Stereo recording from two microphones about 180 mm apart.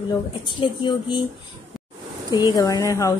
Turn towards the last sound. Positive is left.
turn(degrees=20)  # may be behind; listen again after turning